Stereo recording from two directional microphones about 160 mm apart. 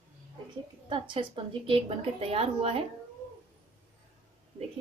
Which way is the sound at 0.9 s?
30° right (ahead or behind).